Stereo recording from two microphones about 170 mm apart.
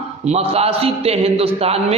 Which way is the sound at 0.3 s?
35° right (ahead or behind).